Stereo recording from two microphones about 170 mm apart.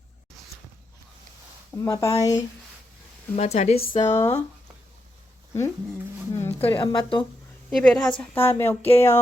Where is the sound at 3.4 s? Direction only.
40° left (ahead or behind); by 4.4 s 20° left (ahead or behind).